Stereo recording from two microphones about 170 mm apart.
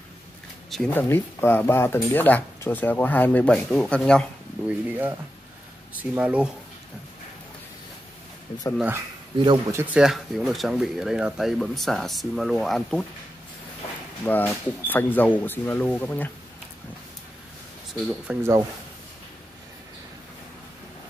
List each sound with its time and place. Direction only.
0.7 s speech: 5° left (ahead or behind)
4.6 s speech: 10° right (ahead or behind)
8.7 s speech: 10° right (ahead or behind)
9.4 s speech: 25° right (ahead or behind)
9.9 s speech: centre (ahead or behind)
14.2 s speech: 10° left (ahead or behind)
18.0 s speech: 10° right (ahead or behind)